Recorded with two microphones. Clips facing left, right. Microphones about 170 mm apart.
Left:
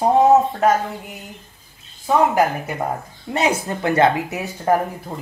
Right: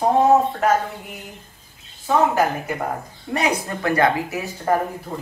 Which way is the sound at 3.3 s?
25° left (ahead or behind).